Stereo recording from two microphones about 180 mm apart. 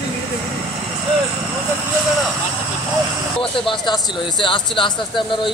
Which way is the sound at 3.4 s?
30° left (ahead or behind).